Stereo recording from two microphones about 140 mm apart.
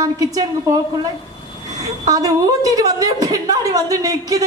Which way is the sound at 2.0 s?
25° right (ahead or behind).